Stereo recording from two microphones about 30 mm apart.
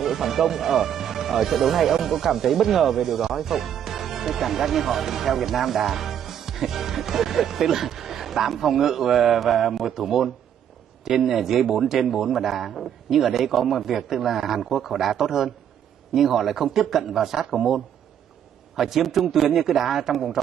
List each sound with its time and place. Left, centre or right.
0.0 s speech: centre